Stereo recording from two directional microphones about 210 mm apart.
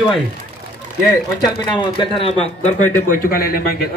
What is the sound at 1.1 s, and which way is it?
Speech, 20° left (ahead or behind).